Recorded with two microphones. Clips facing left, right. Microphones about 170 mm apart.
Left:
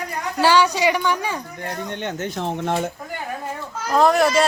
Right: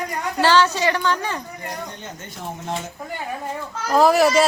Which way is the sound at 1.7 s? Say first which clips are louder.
Left 8 dB; 70° left (ahead or behind).